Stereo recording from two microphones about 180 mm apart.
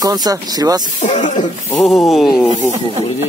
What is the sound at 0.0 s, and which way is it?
Speech, 20° right (ahead or behind).